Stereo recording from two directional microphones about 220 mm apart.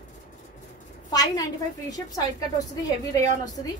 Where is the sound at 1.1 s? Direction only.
15° left (ahead or behind).